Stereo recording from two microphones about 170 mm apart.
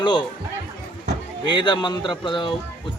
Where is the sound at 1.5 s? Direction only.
25° left (ahead or behind).